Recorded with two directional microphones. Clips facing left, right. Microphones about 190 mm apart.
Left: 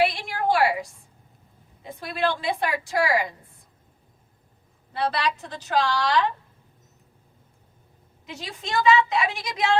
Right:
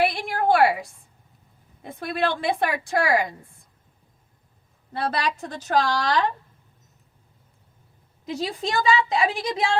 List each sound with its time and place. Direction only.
0.0 s a sound: 55° right (ahead or behind)
1.8 s a woman's voice: 55° right (ahead or behind)
4.9 s a woman's voice: 45° right (ahead or behind)
8.3 s a woman's voice: 35° right (ahead or behind)